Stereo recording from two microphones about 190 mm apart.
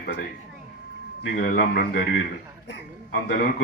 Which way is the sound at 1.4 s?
50° left (ahead or behind).